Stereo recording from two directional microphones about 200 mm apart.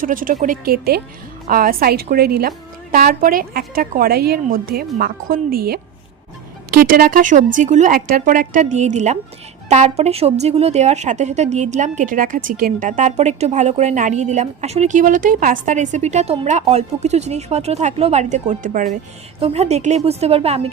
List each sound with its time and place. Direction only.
0.0 s a woman's voice: 45° right (ahead or behind)